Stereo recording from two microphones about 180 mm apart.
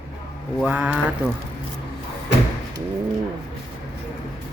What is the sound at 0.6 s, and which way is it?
Speech, 5° right (ahead or behind).